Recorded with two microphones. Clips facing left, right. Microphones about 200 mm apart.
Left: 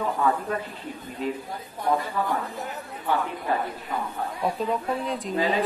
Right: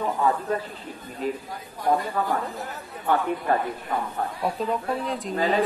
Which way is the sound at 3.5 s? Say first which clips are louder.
Right 3 dB; 50° right (ahead or behind).